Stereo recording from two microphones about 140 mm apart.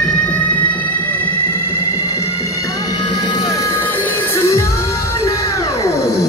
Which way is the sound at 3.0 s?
30° left (ahead or behind).